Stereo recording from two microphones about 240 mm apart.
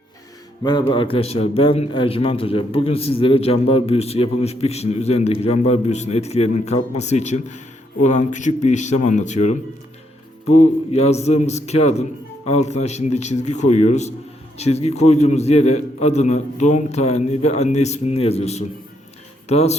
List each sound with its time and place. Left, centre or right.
0.6 s a man's voice: centre
10.9 s a man's voice: left